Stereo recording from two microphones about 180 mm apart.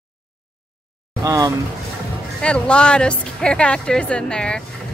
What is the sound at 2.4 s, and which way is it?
Speech, 5° left (ahead or behind).